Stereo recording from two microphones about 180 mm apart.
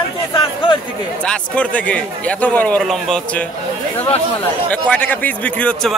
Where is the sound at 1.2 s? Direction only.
5° left (ahead or behind).